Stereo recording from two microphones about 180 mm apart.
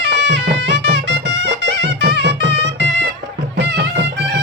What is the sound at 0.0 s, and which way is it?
Music, 70° right (ahead or behind).